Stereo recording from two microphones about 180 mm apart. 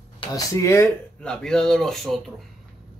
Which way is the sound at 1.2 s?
5° left (ahead or behind).